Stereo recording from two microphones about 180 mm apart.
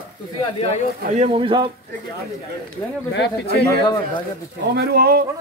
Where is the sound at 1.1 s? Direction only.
30° right (ahead or behind).